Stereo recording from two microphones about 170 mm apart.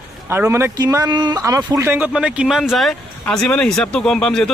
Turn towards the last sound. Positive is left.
turn(degrees=5)  # may be behind; listen again after turning